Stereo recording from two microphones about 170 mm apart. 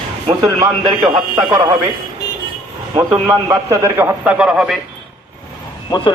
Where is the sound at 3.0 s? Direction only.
20° right (ahead or behind); by 4.8 s 5° right (ahead or behind).